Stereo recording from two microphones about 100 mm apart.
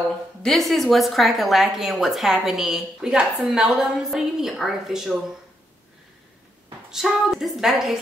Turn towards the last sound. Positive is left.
turn(degrees=-5)  # may be behind; listen again after turning